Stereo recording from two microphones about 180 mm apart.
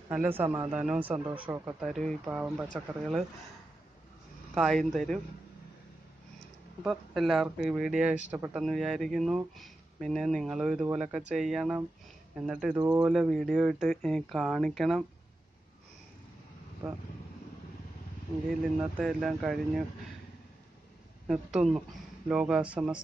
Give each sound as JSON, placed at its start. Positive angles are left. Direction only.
{"t": 0.1, "sound": "speech", "side_deg": -10}
{"t": 4.6, "sound": "speech", "side_deg": 0}
{"t": 6.8, "sound": "speech", "side_deg": 0}
{"t": 12.7, "sound": "speech", "side_deg": -15}
{"t": 13.1, "sound": "speech", "side_deg": 0}
{"t": 18.8, "sound": "speech", "side_deg": -5}
{"t": 21.3, "sound": "speech", "side_deg": -5}